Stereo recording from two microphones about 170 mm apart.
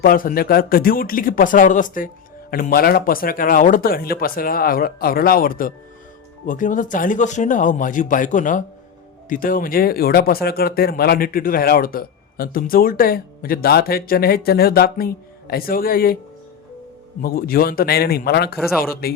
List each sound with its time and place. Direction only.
0.0 s speech: 55° left (ahead or behind)
17.2 s speech: 60° left (ahead or behind)